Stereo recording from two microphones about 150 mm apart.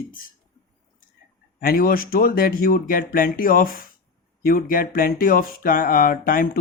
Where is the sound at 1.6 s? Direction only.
75° left (ahead or behind).